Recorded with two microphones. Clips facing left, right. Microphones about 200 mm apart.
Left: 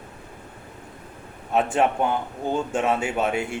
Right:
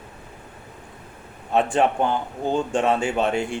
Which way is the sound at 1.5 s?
5° left (ahead or behind).